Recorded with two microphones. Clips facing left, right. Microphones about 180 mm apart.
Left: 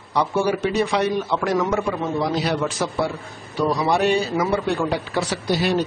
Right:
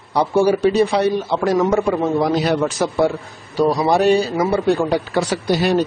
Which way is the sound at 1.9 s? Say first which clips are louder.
Right 6 dB; 50° right (ahead or behind).